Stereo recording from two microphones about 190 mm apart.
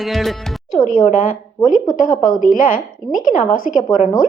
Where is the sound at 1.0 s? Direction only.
35° left (ahead or behind).